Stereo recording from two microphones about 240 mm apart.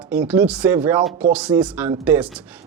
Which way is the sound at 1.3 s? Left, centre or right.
Centre.